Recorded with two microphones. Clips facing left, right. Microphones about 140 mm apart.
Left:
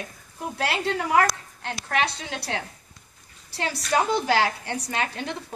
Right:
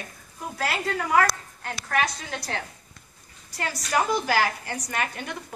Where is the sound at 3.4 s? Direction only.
30° left (ahead or behind).